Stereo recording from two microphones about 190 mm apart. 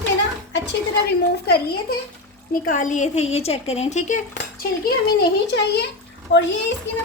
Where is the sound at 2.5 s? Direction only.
45° left (ahead or behind).